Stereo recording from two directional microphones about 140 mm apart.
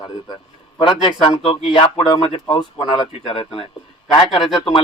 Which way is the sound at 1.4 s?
45° left (ahead or behind).